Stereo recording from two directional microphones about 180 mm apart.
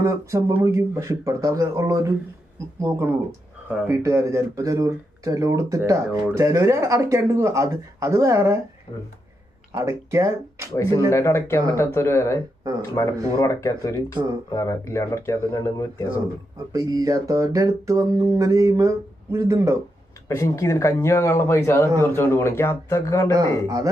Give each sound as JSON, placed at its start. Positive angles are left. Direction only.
{"t": 0.0, "sound": "speech", "side_deg": -15}
{"t": 9.7, "sound": "speech", "side_deg": -15}
{"t": 10.7, "sound": "speech", "side_deg": 15}
{"t": 16.7, "sound": "a sound", "side_deg": -20}
{"t": 20.2, "sound": "speech", "side_deg": 15}